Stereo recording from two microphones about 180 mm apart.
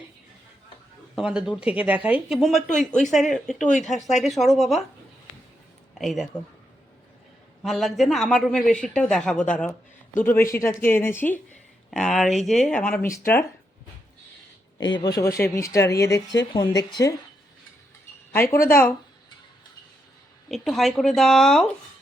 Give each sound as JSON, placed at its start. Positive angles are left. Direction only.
{"t": 1.1, "sound": "a man's voice", "side_deg": -5}
{"t": 3.7, "sound": "speech", "side_deg": 40}
{"t": 4.1, "sound": "a man's voice", "side_deg": 0}
{"t": 6.0, "sound": "speech", "side_deg": 0}
{"t": 7.6, "sound": "a man's voice", "side_deg": 0}
{"t": 14.9, "sound": "speech", "side_deg": 20}
{"t": 18.3, "sound": "speech", "side_deg": 15}
{"t": 20.5, "sound": "a man's voice", "side_deg": 0}